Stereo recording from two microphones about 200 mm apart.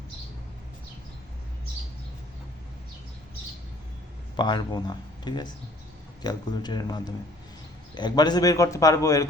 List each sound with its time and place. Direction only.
4.4 s a man's voice: 20° left (ahead or behind)